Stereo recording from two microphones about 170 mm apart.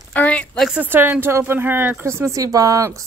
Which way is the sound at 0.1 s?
10° left (ahead or behind).